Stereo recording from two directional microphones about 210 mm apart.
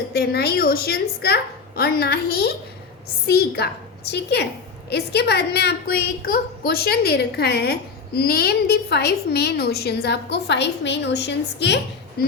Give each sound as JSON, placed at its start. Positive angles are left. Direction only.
{"t": 0.1, "sound": "a woman's voice", "side_deg": 45}